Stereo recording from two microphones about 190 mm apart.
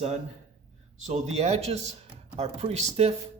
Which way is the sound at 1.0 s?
35° right (ahead or behind).